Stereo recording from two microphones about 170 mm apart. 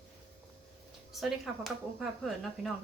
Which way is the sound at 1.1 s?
Centre (ahead or behind).